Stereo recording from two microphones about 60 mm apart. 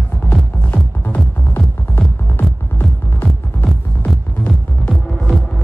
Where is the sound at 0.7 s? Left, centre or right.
Left.